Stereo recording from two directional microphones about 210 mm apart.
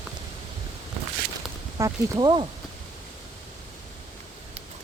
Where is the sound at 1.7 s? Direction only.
20° right (ahead or behind).